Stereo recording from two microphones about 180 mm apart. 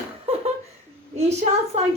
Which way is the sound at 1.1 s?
35° right (ahead or behind).